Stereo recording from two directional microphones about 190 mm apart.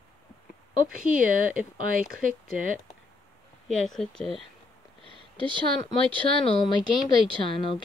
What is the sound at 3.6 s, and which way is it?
Speech, centre (ahead or behind).